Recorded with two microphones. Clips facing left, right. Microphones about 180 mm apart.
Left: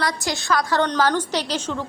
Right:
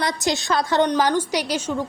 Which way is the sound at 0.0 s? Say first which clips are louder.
Right 2 dB; 20° right (ahead or behind).